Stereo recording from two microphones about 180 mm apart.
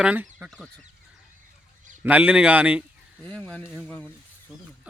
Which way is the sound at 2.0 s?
10° right (ahead or behind).